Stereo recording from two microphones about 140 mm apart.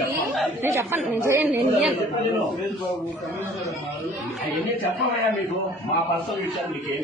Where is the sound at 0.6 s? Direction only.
20° right (ahead or behind).